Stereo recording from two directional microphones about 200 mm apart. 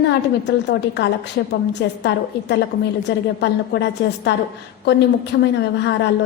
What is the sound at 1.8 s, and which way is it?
Speech, 60° left (ahead or behind).